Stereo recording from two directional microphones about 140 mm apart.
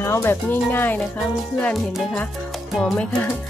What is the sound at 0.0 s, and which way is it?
Speech, 20° left (ahead or behind).